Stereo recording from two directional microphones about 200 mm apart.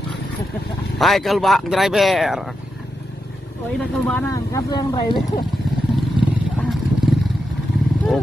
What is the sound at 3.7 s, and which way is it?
Speech, 5° left (ahead or behind).